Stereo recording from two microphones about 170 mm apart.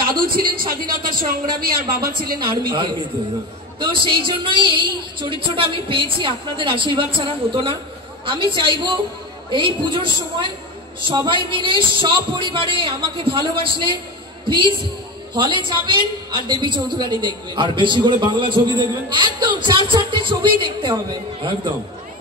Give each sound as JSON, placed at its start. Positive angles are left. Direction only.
{"t": 0.1, "sound": "a man's voice", "side_deg": -60}
{"t": 2.4, "sound": "a woman's voice", "side_deg": -30}